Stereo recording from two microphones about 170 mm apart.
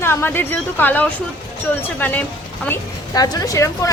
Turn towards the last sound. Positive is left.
turn(degrees=20)  # may be behind; listen again after turning